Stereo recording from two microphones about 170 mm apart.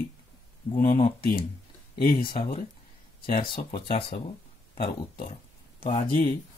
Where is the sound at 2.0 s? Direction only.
60° left (ahead or behind).